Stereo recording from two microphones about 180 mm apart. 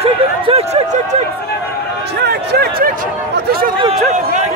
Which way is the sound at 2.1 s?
60° right (ahead or behind).